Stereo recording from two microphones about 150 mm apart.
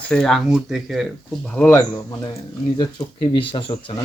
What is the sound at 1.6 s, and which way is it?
Speech, 15° left (ahead or behind).